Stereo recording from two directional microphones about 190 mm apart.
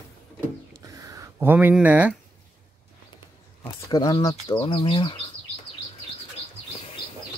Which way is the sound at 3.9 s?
20° left (ahead or behind).